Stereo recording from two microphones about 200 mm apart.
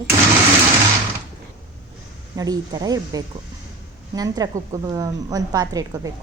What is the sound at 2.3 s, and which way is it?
A woman's voice, 20° right (ahead or behind).